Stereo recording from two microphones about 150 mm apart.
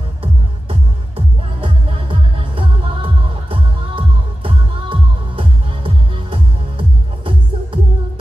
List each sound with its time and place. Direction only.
0.2 s music: 40° right (ahead or behind)